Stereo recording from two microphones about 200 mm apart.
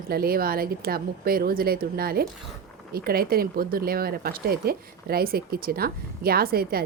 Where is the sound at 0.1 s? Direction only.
50° right (ahead or behind).